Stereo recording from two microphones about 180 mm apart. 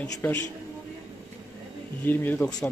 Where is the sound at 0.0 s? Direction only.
10° left (ahead or behind).